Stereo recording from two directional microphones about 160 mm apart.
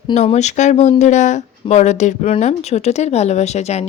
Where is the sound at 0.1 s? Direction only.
45° left (ahead or behind).